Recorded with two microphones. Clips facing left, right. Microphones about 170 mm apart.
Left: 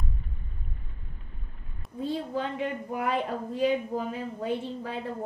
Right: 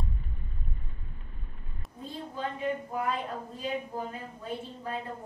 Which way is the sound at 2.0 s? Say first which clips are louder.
Left 6 dB; 90° left.